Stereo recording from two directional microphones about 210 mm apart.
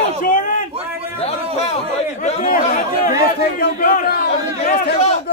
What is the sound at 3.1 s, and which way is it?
A man's voice, 45° left (ahead or behind).